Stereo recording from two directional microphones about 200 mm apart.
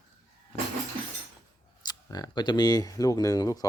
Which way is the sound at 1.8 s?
20° left (ahead or behind).